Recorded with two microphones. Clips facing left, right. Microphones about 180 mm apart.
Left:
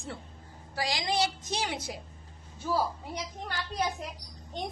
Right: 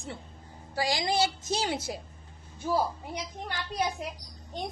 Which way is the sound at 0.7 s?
25° right (ahead or behind).